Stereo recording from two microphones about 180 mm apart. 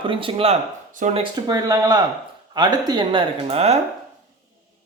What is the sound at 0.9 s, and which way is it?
Speech, 45° right (ahead or behind).